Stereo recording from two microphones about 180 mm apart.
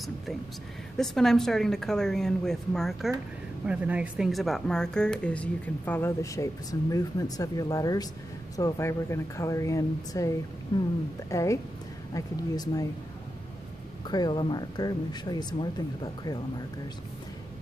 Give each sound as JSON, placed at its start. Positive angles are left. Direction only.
{"t": 0.9, "sound": "speech", "side_deg": 0}
{"t": 11.2, "sound": "speech", "side_deg": 15}
{"t": 14.0, "sound": "speech", "side_deg": 25}